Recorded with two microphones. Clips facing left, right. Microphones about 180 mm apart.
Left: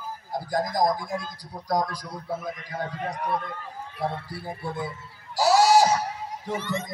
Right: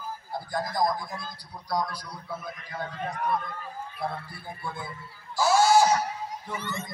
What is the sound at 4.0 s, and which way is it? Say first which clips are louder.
Speech: left 5 dB; 85° left.